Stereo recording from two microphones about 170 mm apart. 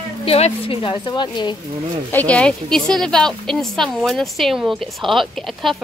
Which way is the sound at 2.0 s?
10° left (ahead or behind).